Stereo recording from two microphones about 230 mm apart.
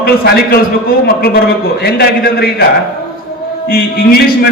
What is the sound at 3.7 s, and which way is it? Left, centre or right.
Speech, left.